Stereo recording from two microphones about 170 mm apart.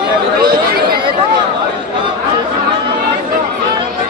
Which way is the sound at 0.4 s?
60° right (ahead or behind).